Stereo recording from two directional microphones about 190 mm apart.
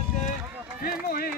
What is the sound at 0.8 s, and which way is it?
Run, 50° left (ahead or behind).